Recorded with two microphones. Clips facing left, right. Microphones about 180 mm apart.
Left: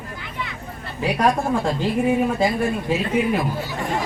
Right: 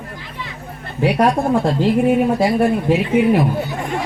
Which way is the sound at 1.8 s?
65° right (ahead or behind).